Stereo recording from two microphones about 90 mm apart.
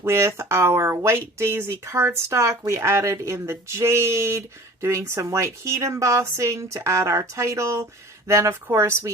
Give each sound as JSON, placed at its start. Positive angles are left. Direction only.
{"t": 0.0, "sound": "speech", "side_deg": -30}